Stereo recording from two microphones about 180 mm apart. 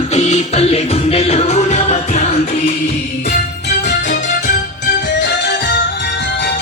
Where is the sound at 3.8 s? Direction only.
45° left (ahead or behind).